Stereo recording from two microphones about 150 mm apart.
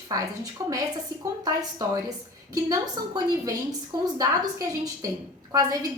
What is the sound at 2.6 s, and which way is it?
A woman's voice, 25° right (ahead or behind).